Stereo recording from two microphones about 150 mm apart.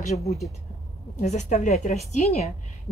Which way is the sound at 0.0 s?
50° left (ahead or behind).